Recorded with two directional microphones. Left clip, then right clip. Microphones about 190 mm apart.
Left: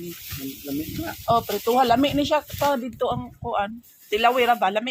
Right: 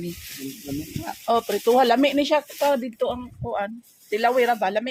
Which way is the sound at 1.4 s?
35° right (ahead or behind).